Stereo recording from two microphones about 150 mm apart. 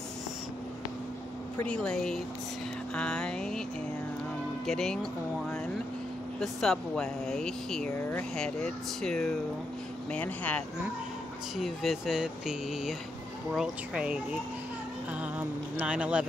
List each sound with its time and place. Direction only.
1.6 s speech: 5° left (ahead or behind)
4.6 s speech: centre (ahead or behind)
6.4 s speech: centre (ahead or behind)
7.9 s speech: 15° left (ahead or behind)
8.4 s speech: 5° left (ahead or behind)
11.5 s speech: centre (ahead or behind)
15.3 s speech: 10° right (ahead or behind)